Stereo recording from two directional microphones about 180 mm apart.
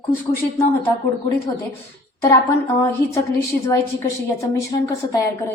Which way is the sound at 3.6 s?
15° left (ahead or behind).